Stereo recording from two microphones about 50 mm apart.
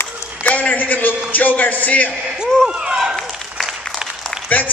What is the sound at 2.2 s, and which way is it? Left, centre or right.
Speech, centre.